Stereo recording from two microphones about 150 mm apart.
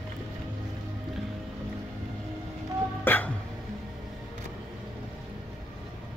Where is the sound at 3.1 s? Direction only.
10° left (ahead or behind).